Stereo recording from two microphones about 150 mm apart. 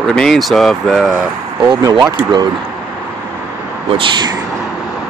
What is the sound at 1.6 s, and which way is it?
Speech, 25° right (ahead or behind).